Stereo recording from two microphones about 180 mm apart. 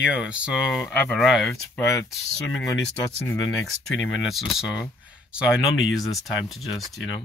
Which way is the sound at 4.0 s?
Centre (ahead or behind).